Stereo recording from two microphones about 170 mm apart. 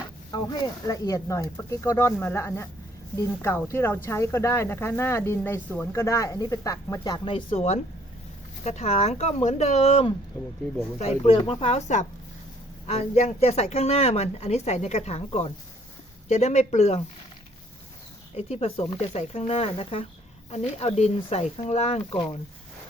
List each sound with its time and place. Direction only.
0.3 s speech: 25° left (ahead or behind); by 17.0 s 40° left (ahead or behind)
18.3 s speech: 40° left (ahead or behind)